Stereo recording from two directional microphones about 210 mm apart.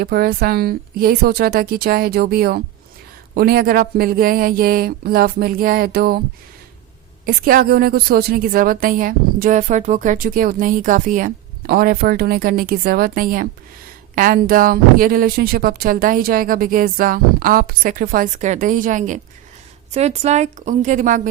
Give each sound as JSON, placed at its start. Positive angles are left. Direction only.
{"t": 0.0, "sound": "a woman's voice", "side_deg": -50}
{"t": 7.3, "sound": "a woman's voice", "side_deg": -45}